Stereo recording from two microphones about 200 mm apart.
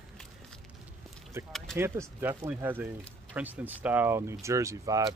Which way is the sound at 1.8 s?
10° right (ahead or behind).